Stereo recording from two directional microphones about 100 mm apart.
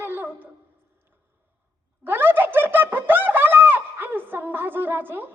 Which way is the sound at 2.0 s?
20° right (ahead or behind).